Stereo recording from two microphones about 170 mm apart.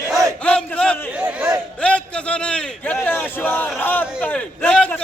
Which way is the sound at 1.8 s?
5° left (ahead or behind).